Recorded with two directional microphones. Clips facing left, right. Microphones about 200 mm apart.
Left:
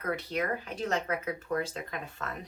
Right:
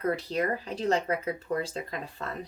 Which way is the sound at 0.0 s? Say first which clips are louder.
Right 4 dB; 30° right (ahead or behind).